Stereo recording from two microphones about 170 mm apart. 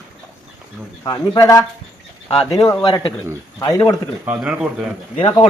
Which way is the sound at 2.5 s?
20° left (ahead or behind).